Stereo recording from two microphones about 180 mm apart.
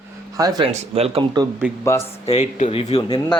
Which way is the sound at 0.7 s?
35° right (ahead or behind).